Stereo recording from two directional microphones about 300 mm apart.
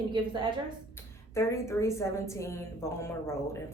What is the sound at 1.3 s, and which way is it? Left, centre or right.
A woman's voice, centre.